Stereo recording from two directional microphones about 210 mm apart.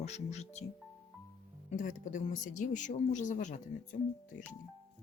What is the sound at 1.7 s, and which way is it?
Speech, 35° left (ahead or behind).